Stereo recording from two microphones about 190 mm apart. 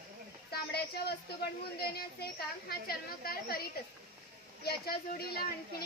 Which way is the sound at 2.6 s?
50° left (ahead or behind).